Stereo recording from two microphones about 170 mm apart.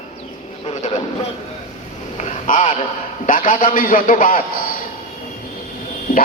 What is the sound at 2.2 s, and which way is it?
Vehicle, 45° left (ahead or behind).